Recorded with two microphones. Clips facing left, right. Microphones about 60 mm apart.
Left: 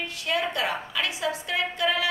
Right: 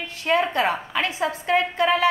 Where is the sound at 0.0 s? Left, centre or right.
Right.